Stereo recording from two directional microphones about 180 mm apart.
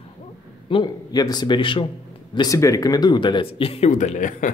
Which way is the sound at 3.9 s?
45° left (ahead or behind).